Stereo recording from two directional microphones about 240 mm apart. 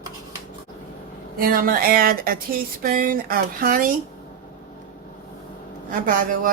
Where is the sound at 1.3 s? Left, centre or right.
Right.